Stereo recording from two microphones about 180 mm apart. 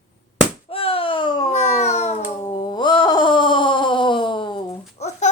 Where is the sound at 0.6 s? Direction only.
30° left (ahead or behind).